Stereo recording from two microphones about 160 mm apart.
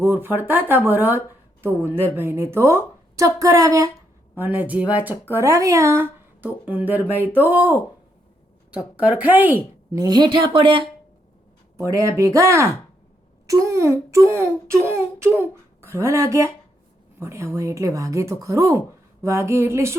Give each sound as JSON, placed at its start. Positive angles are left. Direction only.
{"t": 0.0, "sound": "speech", "side_deg": -15}
{"t": 9.9, "sound": "a woman's voice", "side_deg": -25}
{"t": 11.9, "sound": "speech", "side_deg": -20}